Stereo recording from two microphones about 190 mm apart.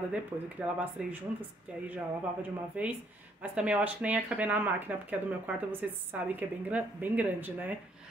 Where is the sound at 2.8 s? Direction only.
5° right (ahead or behind).